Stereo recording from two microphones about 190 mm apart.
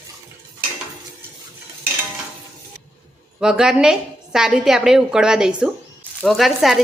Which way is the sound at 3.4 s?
5° right (ahead or behind).